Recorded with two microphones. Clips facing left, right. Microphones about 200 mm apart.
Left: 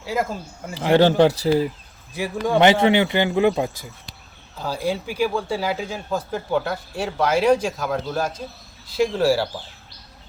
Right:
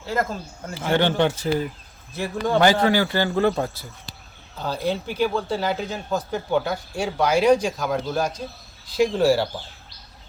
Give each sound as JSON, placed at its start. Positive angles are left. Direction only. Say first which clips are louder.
{"t": 0.0, "sound": "a man's voice", "louder": "left 1 dB", "side_deg": 10}
{"t": 0.8, "sound": "speech", "louder": "left 5 dB", "side_deg": 35}
{"t": 2.2, "sound": "a man's voice", "louder": "left 2 dB", "side_deg": 15}
{"t": 4.5, "sound": "speech", "louder": "even", "side_deg": 5}